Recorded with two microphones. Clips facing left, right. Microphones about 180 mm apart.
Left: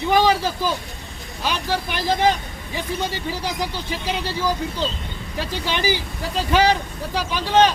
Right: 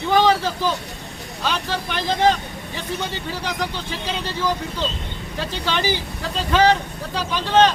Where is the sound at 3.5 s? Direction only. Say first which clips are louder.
Right 1 dB; 10° left (ahead or behind).